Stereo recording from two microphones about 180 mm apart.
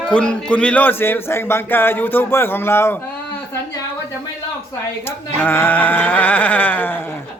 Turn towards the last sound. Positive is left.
turn(degrees=10)  # may be behind; listen again after turning